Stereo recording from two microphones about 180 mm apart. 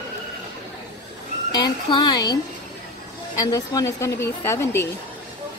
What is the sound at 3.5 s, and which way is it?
A woman's voice, 20° left (ahead or behind).